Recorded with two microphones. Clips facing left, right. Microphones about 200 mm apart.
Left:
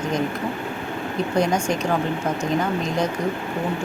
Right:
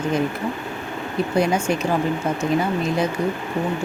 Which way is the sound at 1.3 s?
10° right (ahead or behind).